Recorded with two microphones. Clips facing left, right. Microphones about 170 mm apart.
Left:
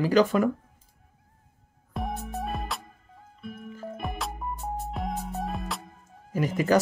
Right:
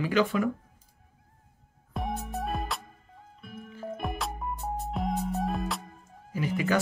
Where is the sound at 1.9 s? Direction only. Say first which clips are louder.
Even; centre (ahead or behind).